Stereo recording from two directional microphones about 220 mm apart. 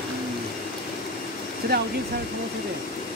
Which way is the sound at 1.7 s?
45° right (ahead or behind).